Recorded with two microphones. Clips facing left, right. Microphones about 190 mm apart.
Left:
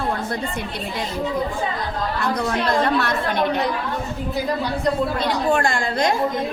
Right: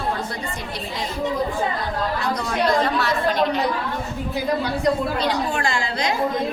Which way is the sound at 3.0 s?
55° left (ahead or behind).